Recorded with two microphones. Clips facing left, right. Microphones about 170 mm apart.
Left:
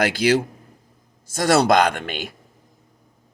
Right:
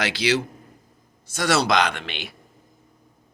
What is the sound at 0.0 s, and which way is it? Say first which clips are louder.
Speech: left 5 dB; 50° left (ahead or behind).